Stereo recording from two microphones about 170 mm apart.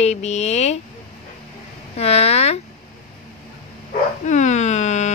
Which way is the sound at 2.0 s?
35° left (ahead or behind).